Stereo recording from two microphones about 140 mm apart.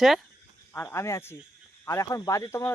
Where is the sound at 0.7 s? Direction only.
20° left (ahead or behind).